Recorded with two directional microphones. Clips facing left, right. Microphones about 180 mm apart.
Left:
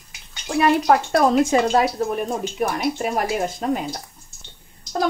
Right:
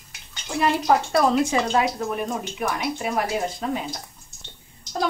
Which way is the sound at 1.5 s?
40° left (ahead or behind).